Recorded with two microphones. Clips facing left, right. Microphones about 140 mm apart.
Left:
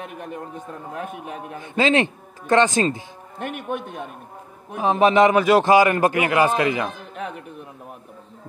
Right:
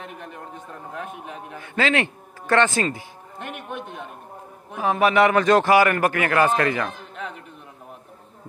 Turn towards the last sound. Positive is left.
turn(degrees=15)  # may be behind; listen again after turning